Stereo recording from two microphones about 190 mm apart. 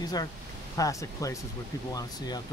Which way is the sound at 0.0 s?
20° left (ahead or behind).